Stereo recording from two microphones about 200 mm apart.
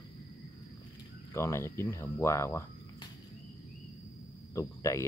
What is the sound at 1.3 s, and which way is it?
Speech, 15° left (ahead or behind).